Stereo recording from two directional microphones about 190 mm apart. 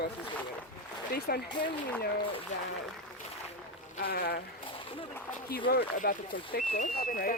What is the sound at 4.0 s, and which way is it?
Speech, 50° left (ahead or behind).